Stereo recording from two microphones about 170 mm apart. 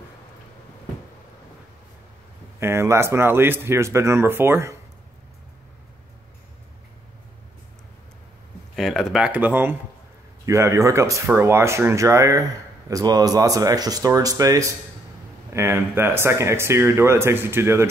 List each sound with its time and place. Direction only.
2.6 s speech: 15° right (ahead or behind)
8.7 s speech: centre (ahead or behind)